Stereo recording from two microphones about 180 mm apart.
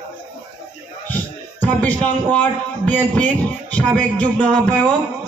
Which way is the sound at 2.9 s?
10° left (ahead or behind).